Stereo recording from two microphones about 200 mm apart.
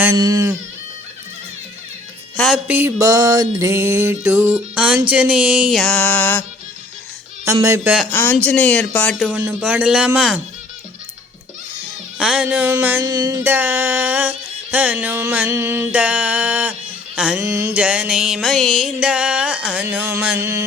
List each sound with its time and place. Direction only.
0.0 s music: 15° right (ahead or behind)
2.3 s speech: 5° left (ahead or behind)
2.6 s music: 10° right (ahead or behind); by 6.4 s 10° left (ahead or behind)
7.4 s music: 15° right (ahead or behind)
8.1 s speech: 10° left (ahead or behind)
8.4 s music: 5° left (ahead or behind)
12.1 s music: 5° right (ahead or behind)
13.1 s music: 20° right (ahead or behind); by 17.4 s 5° right (ahead or behind)
17.4 s music: 15° right (ahead or behind)